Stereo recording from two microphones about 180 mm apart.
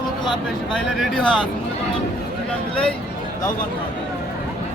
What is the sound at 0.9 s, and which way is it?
Speech, centre (ahead or behind).